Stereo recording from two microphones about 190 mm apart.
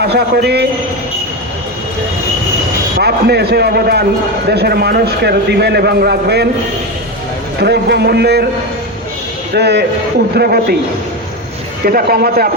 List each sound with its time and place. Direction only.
0.0 s a man's voice: 60° right (ahead or behind)
3.0 s a man's voice: 60° right (ahead or behind)
7.6 s a man's voice: 60° right (ahead or behind)
9.6 s a man's voice: 60° right (ahead or behind)
11.9 s a man's voice: 55° right (ahead or behind)